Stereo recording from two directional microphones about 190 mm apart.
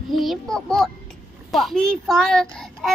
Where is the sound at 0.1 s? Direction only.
Centre (ahead or behind).